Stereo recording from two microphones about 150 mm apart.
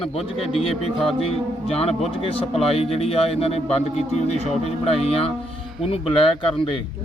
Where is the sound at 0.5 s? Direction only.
40° left (ahead or behind).